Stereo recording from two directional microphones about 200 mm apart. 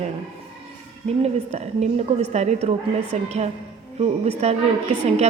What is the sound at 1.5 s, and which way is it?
A woman's voice, 35° right (ahead or behind).